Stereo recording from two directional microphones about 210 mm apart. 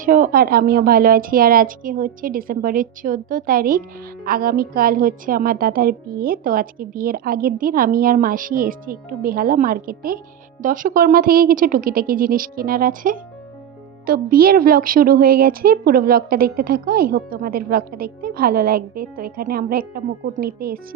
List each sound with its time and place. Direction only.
0.0 s speech: 40° right (ahead or behind)